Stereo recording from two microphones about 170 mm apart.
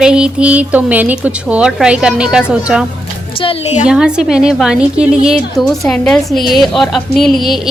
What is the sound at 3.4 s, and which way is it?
Speech, 35° left (ahead or behind).